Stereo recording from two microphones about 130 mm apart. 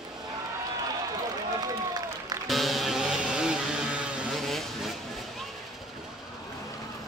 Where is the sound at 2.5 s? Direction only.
Centre (ahead or behind).